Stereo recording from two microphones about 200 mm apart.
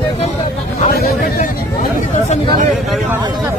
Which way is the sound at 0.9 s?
45° left (ahead or behind).